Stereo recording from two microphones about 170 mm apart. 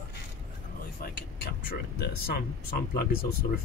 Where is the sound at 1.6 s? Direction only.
65° left (ahead or behind).